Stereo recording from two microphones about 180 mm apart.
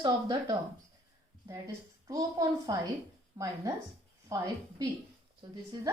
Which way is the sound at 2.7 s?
20° right (ahead or behind).